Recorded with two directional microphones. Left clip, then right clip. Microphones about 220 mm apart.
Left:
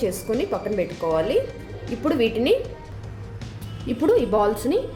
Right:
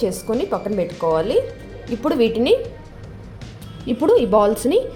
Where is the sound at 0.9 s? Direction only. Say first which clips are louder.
Right 5 dB; centre (ahead or behind).